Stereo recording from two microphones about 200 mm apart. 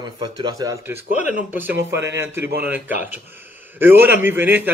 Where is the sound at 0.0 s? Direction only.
20° right (ahead or behind).